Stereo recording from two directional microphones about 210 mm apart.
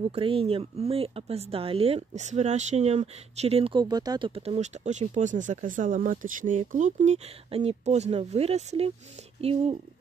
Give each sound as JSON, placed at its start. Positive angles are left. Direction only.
{"t": 0.0, "sound": "speech", "side_deg": -25}